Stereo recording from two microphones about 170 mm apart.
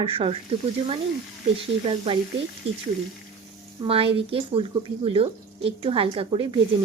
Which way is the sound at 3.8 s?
35° right (ahead or behind).